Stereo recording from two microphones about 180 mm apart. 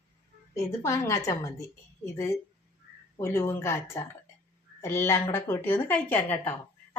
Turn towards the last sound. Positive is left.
turn(degrees=10)  # may be behind; listen again after turning